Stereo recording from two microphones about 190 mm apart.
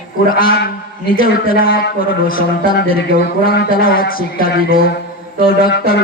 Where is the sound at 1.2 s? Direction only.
50° left (ahead or behind).